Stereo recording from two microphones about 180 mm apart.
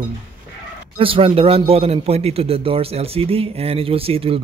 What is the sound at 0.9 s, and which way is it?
A man's voice, 30° right (ahead or behind).